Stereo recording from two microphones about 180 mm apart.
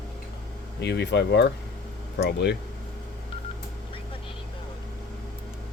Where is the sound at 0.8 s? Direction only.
70° left (ahead or behind).